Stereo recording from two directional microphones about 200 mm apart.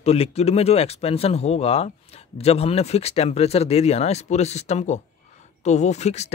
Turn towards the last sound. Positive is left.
turn(degrees=35)  # may be behind; listen again after turning